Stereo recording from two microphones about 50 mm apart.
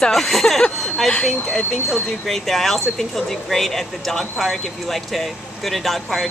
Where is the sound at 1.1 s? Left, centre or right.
Centre.